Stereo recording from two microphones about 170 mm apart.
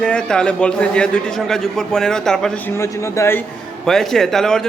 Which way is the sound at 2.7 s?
15° left (ahead or behind).